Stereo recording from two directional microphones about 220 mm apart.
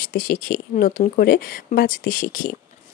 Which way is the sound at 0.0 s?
45° left (ahead or behind).